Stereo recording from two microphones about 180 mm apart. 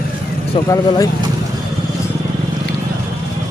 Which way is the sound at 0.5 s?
30° left (ahead or behind).